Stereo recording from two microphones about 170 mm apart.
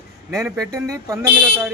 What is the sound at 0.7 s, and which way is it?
Speech, 20° right (ahead or behind).